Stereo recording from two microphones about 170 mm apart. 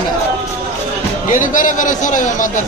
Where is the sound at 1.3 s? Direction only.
50° left (ahead or behind).